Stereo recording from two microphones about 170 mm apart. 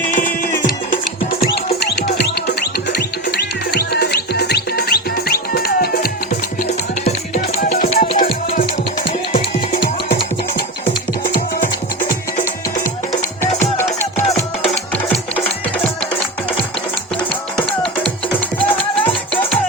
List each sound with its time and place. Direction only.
0.1 s music: 50° left (ahead or behind)
1.8 s music: 75° left (ahead or behind)
3.7 s music: 70° left (ahead or behind)
7.7 s music: 40° left (ahead or behind)
13.4 s music: 15° left (ahead or behind)
19.0 s music: 5° left (ahead or behind)